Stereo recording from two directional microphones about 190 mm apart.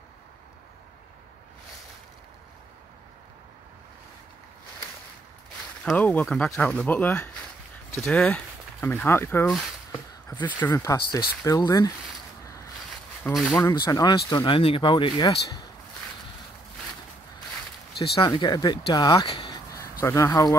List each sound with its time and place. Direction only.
5.9 s speech: 5° left (ahead or behind)
9.9 s speech: 25° left (ahead or behind)
13.3 s speech: 5° left (ahead or behind); by 15.6 s 20° left (ahead or behind)
17.9 s speech: 30° left (ahead or behind)